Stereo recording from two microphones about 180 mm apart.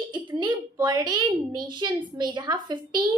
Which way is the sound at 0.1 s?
25° right (ahead or behind).